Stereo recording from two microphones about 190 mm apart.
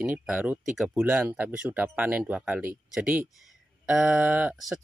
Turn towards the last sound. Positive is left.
turn(degrees=-5)  # may be behind; listen again after turning